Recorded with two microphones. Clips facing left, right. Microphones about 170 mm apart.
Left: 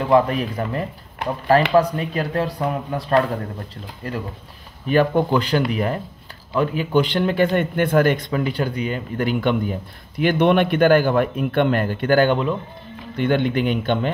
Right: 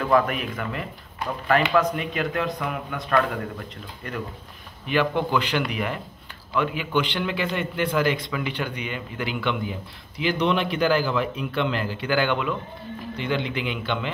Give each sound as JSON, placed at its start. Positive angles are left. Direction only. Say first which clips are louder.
{"t": 0.0, "sound": "speech", "louder": "left 4 dB", "side_deg": 30}
{"t": 4.8, "sound": "a man's voice", "louder": "left 6 dB", "side_deg": 40}
{"t": 13.2, "sound": "a man's voice", "louder": "left 8 dB", "side_deg": 50}